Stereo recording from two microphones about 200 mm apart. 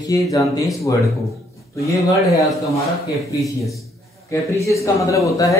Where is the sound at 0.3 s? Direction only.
15° left (ahead or behind).